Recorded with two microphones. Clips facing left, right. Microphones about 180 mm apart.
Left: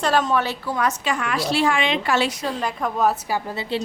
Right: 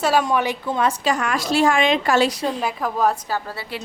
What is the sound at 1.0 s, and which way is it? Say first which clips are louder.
A woman's voice: right 2 dB; 40° right (ahead or behind).